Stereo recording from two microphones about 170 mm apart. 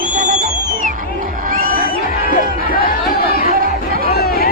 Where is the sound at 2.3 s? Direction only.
55° left (ahead or behind).